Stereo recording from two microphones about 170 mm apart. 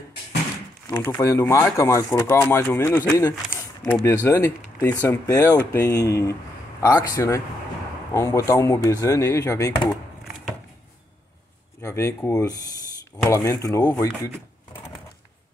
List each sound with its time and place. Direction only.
0.8 s a man's voice: 15° left (ahead or behind)
11.8 s speech: 15° left (ahead or behind)